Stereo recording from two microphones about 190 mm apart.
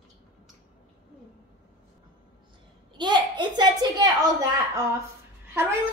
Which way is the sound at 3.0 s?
25° right (ahead or behind).